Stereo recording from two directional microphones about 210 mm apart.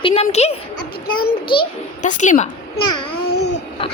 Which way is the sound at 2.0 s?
35° left (ahead or behind).